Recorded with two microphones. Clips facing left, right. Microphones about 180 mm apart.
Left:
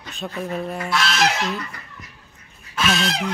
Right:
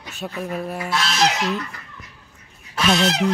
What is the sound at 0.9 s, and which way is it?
Goose, 30° right (ahead or behind).